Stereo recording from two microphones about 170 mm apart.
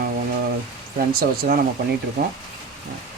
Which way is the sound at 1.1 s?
60° right (ahead or behind).